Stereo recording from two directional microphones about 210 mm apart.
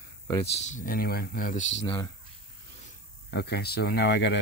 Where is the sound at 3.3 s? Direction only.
50° left (ahead or behind).